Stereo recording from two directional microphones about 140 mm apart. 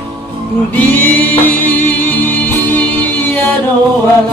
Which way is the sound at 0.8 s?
10° left (ahead or behind).